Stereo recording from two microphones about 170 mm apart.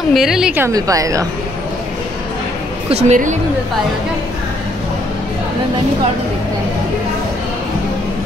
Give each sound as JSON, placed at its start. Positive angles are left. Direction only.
{"t": 0.1, "sound": "a woman's voice", "side_deg": -5}
{"t": 0.7, "sound": "a woman's voice", "side_deg": -20}
{"t": 2.9, "sound": "a woman's voice", "side_deg": -40}